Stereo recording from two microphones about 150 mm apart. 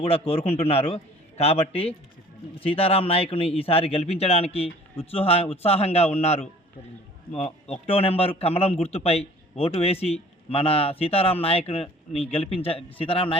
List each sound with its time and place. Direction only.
0.0 s a man's voice: 40° left (ahead or behind)